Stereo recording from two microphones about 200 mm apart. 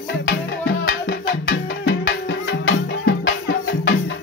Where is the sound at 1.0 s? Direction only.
65° left (ahead or behind).